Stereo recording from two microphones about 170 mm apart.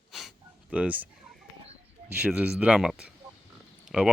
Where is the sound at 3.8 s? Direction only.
5° right (ahead or behind).